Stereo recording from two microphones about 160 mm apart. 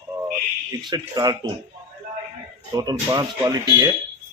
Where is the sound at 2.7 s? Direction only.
25° right (ahead or behind).